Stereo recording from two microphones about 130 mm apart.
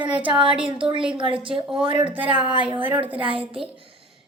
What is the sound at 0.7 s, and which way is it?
A child's voice, 40° right (ahead or behind).